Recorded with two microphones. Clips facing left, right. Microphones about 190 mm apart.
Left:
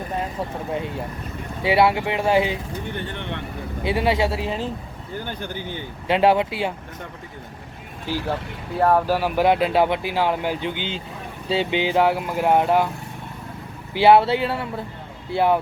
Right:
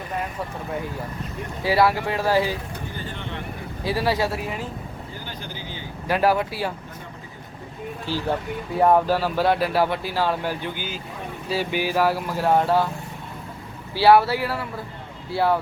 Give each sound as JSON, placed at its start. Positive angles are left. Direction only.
{"t": 0.2, "sound": "speech", "side_deg": 25}
{"t": 2.9, "sound": "speech", "side_deg": 65}
{"t": 3.8, "sound": "speech", "side_deg": 20}
{"t": 5.2, "sound": "speech", "side_deg": 55}
{"t": 6.1, "sound": "speech", "side_deg": 25}
{"t": 8.8, "sound": "speech", "side_deg": -5}
{"t": 9.0, "sound": "speech", "side_deg": 15}
{"t": 13.9, "sound": "speech", "side_deg": 20}